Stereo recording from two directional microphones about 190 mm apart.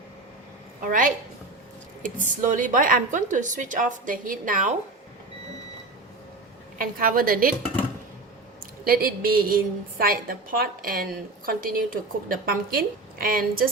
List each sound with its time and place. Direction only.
0.9 s a woman's voice: 45° right (ahead or behind)
6.7 s a woman's voice: 45° right (ahead or behind)
8.8 s a woman's voice: 50° right (ahead or behind)